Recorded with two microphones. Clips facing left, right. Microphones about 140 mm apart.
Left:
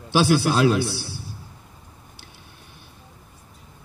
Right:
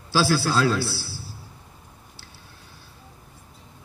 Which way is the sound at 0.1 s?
20° left (ahead or behind).